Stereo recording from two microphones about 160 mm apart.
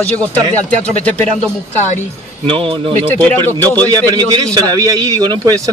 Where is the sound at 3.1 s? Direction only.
15° left (ahead or behind).